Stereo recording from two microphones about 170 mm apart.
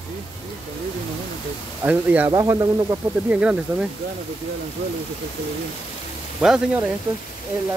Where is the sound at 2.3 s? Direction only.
20° right (ahead or behind).